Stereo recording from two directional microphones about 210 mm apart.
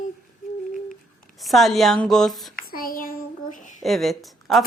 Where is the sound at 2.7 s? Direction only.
45° left (ahead or behind).